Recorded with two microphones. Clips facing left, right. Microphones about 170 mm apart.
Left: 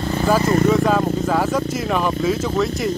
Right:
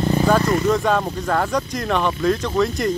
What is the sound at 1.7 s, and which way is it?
Speech, 5° left (ahead or behind).